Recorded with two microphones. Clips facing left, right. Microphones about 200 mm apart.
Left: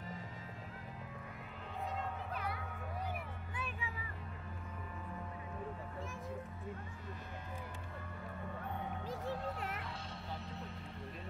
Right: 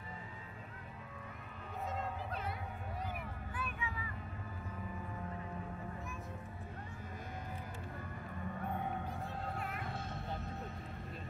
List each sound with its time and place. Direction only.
2.3 s a sound: 25° right (ahead or behind)
3.5 s vehicle: 30° left (ahead or behind)
9.0 s music: 90° left
9.8 s music: 50° right (ahead or behind)